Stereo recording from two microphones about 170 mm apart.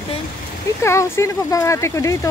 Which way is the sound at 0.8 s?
15° left (ahead or behind).